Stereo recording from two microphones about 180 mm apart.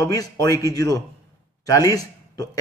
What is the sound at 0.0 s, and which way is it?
A man's voice, 20° left (ahead or behind).